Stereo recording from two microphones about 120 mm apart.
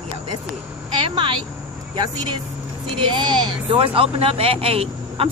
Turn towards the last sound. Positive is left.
turn(degrees=-55)  # may be behind; listen again after turning